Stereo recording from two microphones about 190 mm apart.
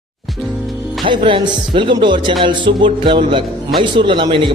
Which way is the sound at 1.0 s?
25° right (ahead or behind).